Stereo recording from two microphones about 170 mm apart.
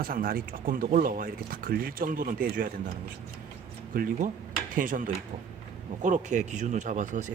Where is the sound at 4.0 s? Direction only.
55° right (ahead or behind).